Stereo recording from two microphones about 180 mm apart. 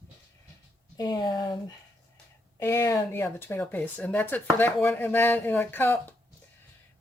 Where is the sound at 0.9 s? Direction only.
20° left (ahead or behind).